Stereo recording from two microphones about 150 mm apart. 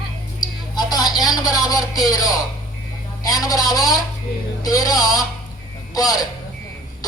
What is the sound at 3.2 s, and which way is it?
A woman's voice, 25° left (ahead or behind).